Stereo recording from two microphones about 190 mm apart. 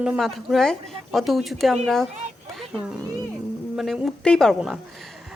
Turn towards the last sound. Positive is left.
turn(degrees=0)  # may be behind; listen again after turning